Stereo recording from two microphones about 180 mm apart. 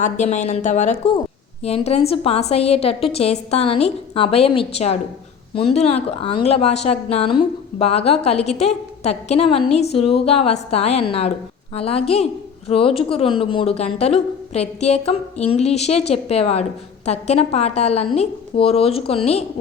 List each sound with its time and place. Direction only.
0.0 s a woman's voice: 40° left (ahead or behind)